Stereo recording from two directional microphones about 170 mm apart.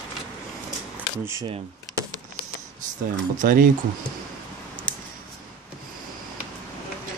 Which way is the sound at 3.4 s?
55° right (ahead or behind).